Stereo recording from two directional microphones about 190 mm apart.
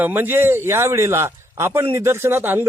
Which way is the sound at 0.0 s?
10° right (ahead or behind).